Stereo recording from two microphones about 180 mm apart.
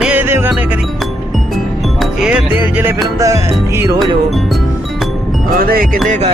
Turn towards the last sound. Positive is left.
turn(degrees=-45)  # may be behind; listen again after turning